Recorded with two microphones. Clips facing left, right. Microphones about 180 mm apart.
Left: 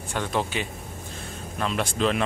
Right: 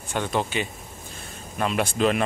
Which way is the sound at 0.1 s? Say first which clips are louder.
Right 2 dB; centre (ahead or behind).